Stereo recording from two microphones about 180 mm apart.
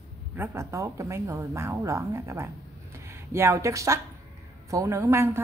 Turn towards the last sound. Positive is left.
turn(degrees=-15)  # may be behind; listen again after turning